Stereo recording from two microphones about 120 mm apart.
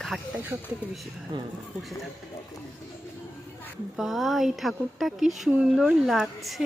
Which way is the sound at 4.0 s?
Centre (ahead or behind).